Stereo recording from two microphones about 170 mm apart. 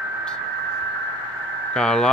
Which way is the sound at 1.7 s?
5° left (ahead or behind).